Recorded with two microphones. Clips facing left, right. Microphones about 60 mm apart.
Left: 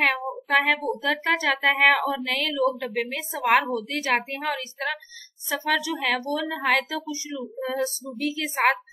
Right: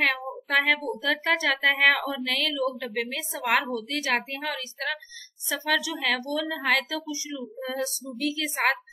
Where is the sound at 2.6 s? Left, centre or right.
Centre.